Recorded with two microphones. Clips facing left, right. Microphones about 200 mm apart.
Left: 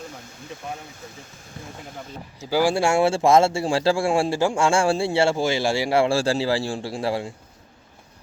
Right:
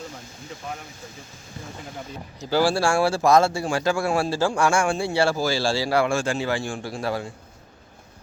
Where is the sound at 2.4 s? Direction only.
10° left (ahead or behind).